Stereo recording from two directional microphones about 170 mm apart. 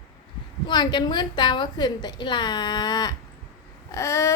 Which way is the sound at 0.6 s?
25° left (ahead or behind).